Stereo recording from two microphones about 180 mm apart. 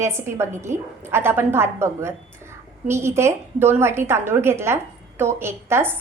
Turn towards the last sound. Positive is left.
turn(degrees=-10)  # may be behind; listen again after turning